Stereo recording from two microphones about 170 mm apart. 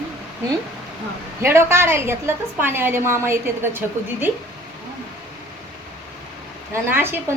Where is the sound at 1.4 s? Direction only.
15° right (ahead or behind).